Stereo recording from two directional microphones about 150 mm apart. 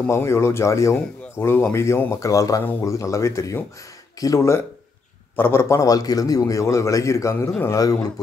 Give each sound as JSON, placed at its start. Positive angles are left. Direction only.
{"t": 0.0, "sound": "speech", "side_deg": 20}